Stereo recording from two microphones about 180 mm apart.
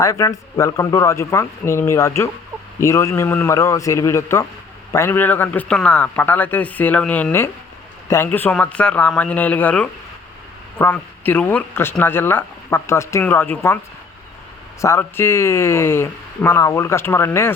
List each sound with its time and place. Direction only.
0.0 s speech: 20° left (ahead or behind)
14.8 s speech: 15° left (ahead or behind)